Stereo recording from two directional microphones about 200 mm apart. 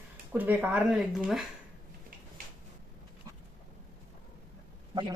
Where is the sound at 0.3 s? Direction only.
10° right (ahead or behind).